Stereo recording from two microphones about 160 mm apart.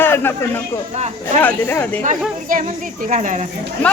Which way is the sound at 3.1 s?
50° right (ahead or behind).